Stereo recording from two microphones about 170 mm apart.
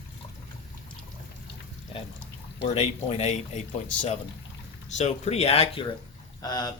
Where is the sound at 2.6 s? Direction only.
35° left (ahead or behind).